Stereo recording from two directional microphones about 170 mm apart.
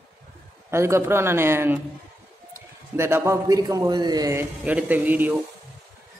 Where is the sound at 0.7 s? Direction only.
15° right (ahead or behind).